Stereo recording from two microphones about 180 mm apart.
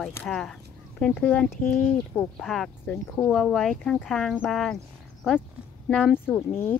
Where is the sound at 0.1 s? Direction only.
5° left (ahead or behind).